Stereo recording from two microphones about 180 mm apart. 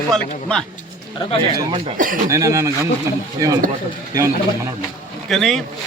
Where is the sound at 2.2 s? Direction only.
15° right (ahead or behind).